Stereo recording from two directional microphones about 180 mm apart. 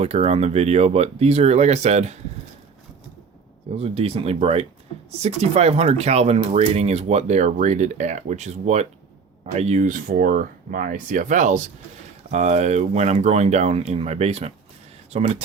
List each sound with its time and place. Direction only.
0.0 s speech: 35° right (ahead or behind)
3.8 s speech: 35° right (ahead or behind)